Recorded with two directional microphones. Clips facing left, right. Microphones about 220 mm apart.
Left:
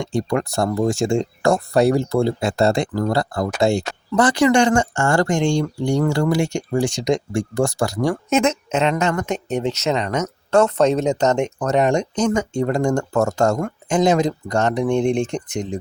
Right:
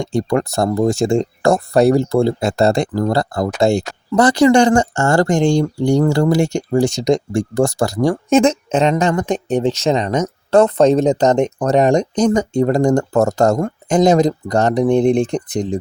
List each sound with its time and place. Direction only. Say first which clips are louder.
0.0 s speech: right 4 dB; 40° right (ahead or behind)